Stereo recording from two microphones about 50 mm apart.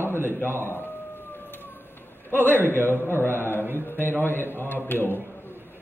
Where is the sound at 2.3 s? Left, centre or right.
Right.